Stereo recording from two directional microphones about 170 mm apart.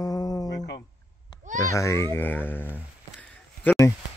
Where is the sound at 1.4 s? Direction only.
45° right (ahead or behind).